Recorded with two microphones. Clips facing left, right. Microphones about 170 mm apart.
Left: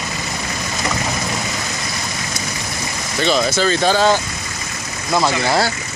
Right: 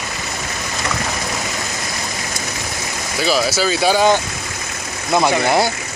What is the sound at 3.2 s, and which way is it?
Speech, 5° right (ahead or behind).